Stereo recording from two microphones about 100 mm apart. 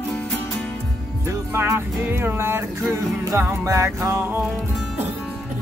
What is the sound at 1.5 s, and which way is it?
Music, 20° right (ahead or behind).